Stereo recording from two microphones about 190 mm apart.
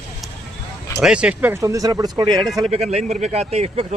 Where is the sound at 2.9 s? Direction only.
35° right (ahead or behind).